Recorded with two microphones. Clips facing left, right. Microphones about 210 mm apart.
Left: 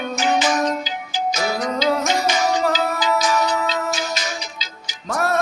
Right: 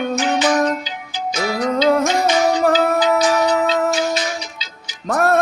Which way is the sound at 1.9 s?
55° right (ahead or behind).